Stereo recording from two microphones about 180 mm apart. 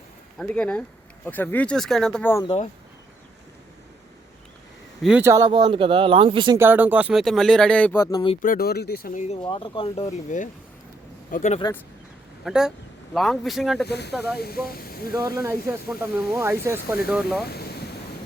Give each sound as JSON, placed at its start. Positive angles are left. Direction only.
{"t": 0.3, "sound": "speech", "side_deg": 5}
{"t": 2.3, "sound": "speech", "side_deg": 25}
{"t": 5.2, "sound": "speech", "side_deg": -20}
{"t": 6.6, "sound": "speech", "side_deg": -10}
{"t": 8.4, "sound": "speech", "side_deg": 55}
{"t": 9.2, "sound": "a man's voice", "side_deg": 30}
{"t": 12.5, "sound": "speech", "side_deg": -5}
{"t": 13.8, "sound": "speech", "side_deg": 65}
{"t": 15.4, "sound": "speech", "side_deg": -15}
{"t": 17.5, "sound": "ocean", "side_deg": 60}